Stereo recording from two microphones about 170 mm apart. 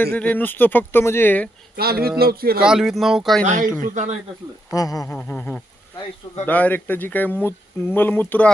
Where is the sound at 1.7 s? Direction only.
65° right (ahead or behind).